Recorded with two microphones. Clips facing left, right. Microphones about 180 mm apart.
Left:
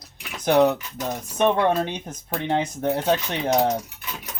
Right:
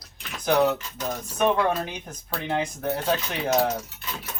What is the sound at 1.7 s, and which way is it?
Speech, 25° left (ahead or behind).